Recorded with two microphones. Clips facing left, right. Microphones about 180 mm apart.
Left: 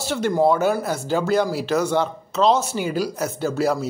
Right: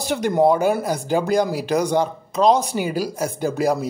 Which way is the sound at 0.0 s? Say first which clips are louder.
Right 2 dB; 15° right (ahead or behind).